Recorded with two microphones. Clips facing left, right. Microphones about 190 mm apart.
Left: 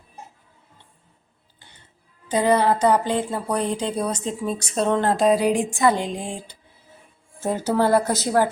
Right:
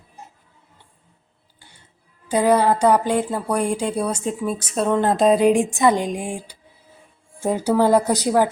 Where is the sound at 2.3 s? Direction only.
10° right (ahead or behind).